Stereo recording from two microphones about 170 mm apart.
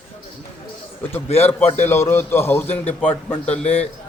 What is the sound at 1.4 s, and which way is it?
Speech, 40° left (ahead or behind).